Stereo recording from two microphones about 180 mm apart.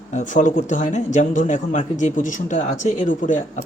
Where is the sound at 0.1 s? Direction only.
45° left (ahead or behind).